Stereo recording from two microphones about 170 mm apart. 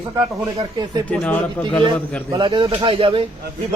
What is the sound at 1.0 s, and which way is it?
Speech, 5° left (ahead or behind).